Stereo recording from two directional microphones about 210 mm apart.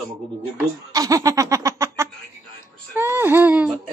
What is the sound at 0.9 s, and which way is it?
Laughter, 15° right (ahead or behind).